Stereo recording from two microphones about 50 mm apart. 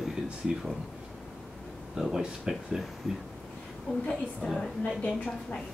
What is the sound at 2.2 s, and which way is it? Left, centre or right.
Speech, centre.